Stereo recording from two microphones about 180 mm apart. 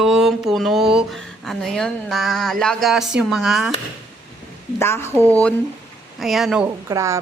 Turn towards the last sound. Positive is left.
turn(degrees=-15)  # may be behind; listen again after turning